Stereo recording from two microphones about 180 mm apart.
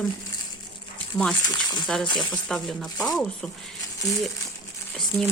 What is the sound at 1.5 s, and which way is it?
Speech, 20° left (ahead or behind).